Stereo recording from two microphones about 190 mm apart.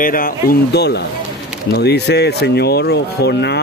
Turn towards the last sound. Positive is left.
turn(degrees=60)  # may be behind; listen again after turning